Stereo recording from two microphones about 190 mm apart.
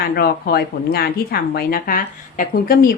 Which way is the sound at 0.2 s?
55° left (ahead or behind).